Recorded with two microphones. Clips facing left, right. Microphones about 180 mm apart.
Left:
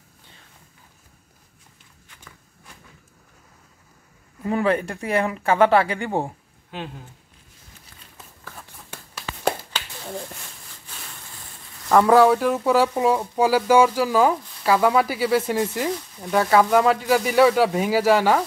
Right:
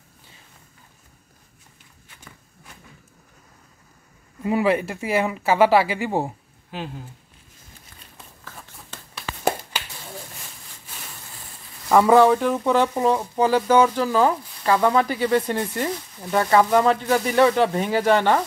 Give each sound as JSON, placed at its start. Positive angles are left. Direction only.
{"t": 4.4, "sound": "speech", "side_deg": -10}
{"t": 9.1, "sound": "a sound", "side_deg": -10}
{"t": 11.9, "sound": "speech", "side_deg": 0}